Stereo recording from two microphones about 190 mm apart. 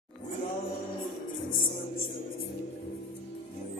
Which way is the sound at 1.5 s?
45° left (ahead or behind).